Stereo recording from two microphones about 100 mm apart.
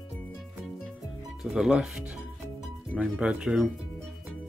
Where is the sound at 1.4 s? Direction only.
5° right (ahead or behind).